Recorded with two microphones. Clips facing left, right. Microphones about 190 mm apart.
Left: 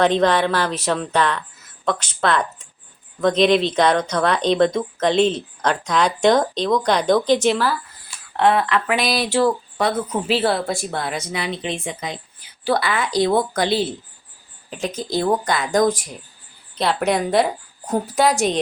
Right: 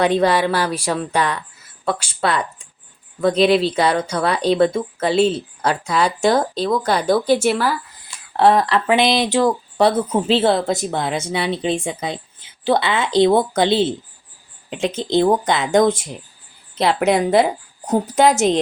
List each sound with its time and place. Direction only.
0.0 s speech: 10° right (ahead or behind)
8.4 s speech: 35° right (ahead or behind)